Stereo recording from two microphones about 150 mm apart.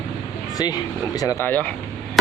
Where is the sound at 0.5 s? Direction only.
25° left (ahead or behind).